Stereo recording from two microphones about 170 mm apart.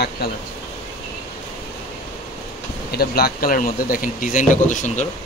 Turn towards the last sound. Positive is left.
turn(degrees=45)  # may be behind; listen again after turning